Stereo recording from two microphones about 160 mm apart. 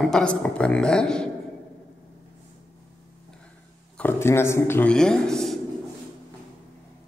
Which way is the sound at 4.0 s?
15° left (ahead or behind).